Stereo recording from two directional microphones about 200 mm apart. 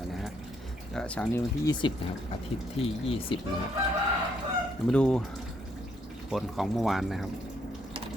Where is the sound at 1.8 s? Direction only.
25° left (ahead or behind).